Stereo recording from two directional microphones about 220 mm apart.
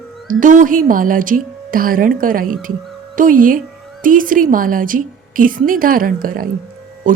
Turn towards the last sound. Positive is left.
turn(degrees=-35)  # may be behind; listen again after turning